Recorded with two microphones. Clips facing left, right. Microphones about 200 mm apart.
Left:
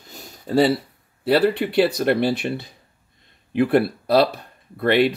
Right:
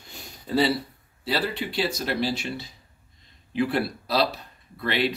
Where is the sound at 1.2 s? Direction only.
60° left (ahead or behind).